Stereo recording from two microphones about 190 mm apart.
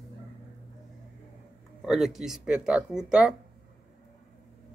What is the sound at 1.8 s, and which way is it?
Speech, centre (ahead or behind).